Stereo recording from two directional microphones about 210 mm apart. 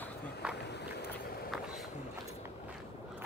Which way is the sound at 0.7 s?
55° left (ahead or behind).